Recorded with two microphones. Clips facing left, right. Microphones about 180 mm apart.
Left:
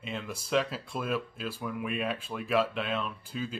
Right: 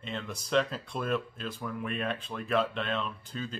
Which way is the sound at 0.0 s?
5° left (ahead or behind).